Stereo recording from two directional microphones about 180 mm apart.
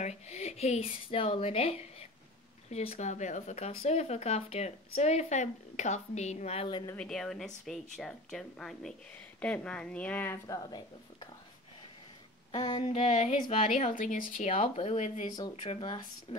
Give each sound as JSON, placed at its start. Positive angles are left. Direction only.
{"t": 0.0, "sound": "speech", "side_deg": 40}
{"t": 6.9, "sound": "speech", "side_deg": 5}
{"t": 12.4, "sound": "speech", "side_deg": 30}